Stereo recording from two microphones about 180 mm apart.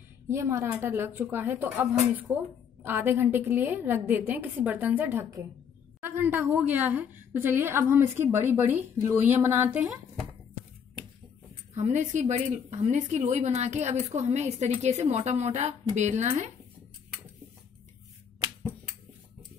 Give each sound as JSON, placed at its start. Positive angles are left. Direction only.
{"t": 0.3, "sound": "a woman's voice", "side_deg": -15}
{"t": 11.7, "sound": "a woman's voice", "side_deg": -40}